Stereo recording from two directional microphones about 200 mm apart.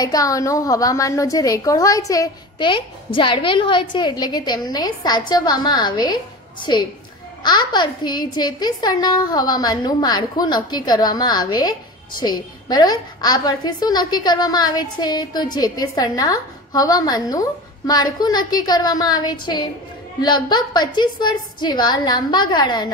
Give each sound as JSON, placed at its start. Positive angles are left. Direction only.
{"t": 0.0, "sound": "a woman's voice", "side_deg": 15}